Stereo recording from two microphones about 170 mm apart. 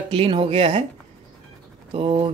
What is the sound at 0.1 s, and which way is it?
Speech, 30° right (ahead or behind).